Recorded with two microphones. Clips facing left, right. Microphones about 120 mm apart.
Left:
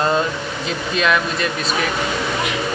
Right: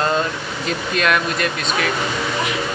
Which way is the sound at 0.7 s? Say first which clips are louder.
Even; centre (ahead or behind).